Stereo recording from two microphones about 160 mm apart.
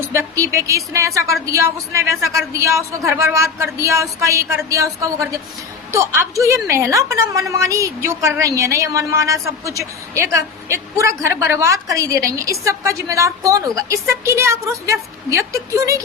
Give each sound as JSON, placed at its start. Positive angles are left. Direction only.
{"t": 0.0, "sound": "a woman's voice", "side_deg": -15}